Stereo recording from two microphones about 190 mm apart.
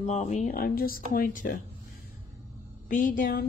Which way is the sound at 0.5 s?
50° left (ahead or behind).